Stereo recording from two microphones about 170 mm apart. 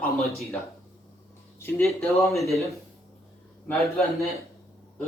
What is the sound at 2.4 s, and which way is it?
Speech, centre (ahead or behind).